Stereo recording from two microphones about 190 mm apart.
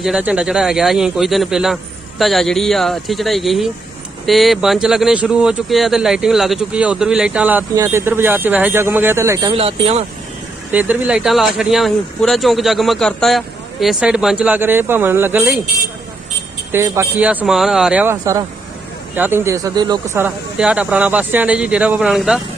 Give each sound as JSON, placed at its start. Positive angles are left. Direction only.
{"t": 0.0, "sound": "speech", "side_deg": -5}
{"t": 9.5, "sound": "speech", "side_deg": -30}
{"t": 10.7, "sound": "speech", "side_deg": -10}
{"t": 16.7, "sound": "speech", "side_deg": -15}
{"t": 20.1, "sound": "speech", "side_deg": -5}